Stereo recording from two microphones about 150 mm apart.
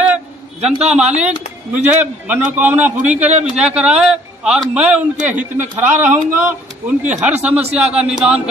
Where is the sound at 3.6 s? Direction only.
5° right (ahead or behind).